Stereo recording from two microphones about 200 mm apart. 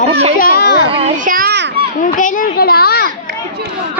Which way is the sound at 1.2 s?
45° right (ahead or behind).